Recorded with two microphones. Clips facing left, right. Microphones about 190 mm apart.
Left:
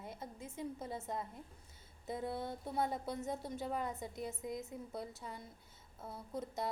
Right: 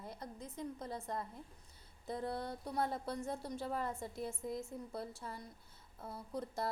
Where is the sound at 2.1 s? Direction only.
Centre (ahead or behind).